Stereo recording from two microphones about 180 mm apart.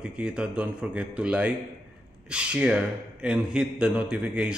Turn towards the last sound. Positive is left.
turn(degrees=-5)  # may be behind; listen again after turning